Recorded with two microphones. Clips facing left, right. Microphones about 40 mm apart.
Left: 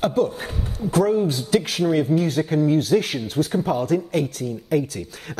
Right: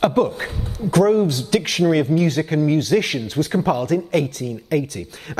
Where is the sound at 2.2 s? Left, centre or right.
Right.